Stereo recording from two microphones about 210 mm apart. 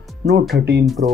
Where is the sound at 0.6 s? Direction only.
50° right (ahead or behind).